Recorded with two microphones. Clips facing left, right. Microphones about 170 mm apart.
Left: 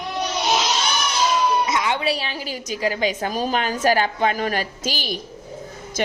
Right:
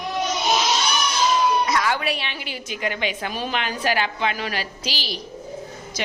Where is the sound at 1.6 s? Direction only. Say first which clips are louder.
Left 1 dB; 20° left (ahead or behind).